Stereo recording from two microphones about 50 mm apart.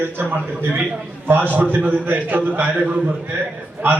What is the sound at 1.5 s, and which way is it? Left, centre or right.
Speech, right.